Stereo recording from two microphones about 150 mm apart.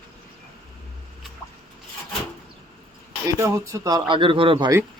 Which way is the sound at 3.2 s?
20° right (ahead or behind).